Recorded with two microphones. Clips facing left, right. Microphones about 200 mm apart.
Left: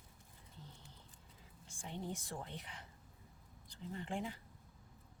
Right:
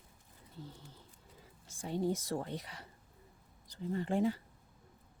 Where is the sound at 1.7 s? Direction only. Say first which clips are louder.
Right 10 dB; 40° right (ahead or behind).